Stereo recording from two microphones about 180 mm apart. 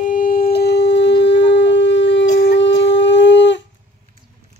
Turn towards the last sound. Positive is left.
turn(degrees=80)